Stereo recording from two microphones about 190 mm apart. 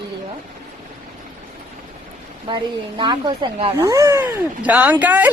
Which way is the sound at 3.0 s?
25° right (ahead or behind).